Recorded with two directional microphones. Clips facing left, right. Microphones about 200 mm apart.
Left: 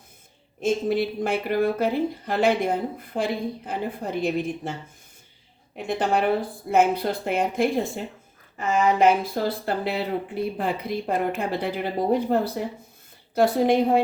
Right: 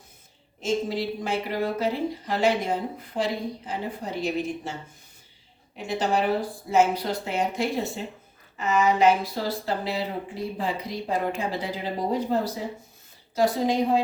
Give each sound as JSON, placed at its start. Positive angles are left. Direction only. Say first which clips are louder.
{"t": 0.6, "sound": "a woman's voice", "louder": "left 4 dB", "side_deg": 55}
{"t": 5.7, "sound": "a woman's voice", "louder": "left 1 dB", "side_deg": 55}